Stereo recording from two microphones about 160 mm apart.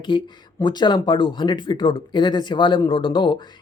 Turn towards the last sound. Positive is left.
turn(degrees=30)  # may be behind; listen again after turning